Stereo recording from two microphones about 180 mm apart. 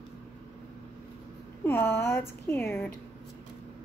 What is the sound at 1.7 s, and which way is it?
Speech, 15° left (ahead or behind).